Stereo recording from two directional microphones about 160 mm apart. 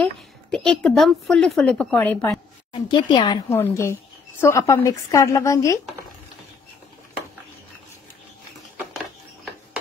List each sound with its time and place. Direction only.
0.0 s a woman's voice: 5° left (ahead or behind)
2.7 s a woman's voice: 30° left (ahead or behind)
3.4 s a woman's voice: 15° left (ahead or behind)